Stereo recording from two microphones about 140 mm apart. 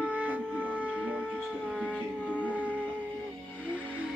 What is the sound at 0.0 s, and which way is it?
Wind instrument, 10° right (ahead or behind).